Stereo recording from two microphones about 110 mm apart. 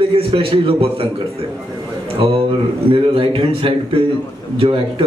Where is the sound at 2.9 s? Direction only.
55° right (ahead or behind).